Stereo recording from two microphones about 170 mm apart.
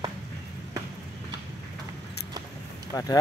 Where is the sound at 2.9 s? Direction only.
20° left (ahead or behind).